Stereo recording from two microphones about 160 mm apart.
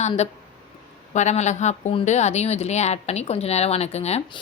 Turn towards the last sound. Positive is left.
turn(degrees=40)  # may be behind; listen again after turning